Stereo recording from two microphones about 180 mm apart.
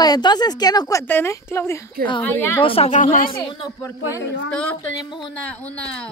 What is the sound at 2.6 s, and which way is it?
Speech, 30° left (ahead or behind).